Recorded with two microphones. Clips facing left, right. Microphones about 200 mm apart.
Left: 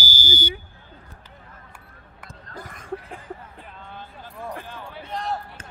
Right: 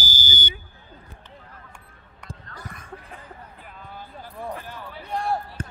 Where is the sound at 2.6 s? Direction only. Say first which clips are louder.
Left 9 dB; 50° left (ahead or behind).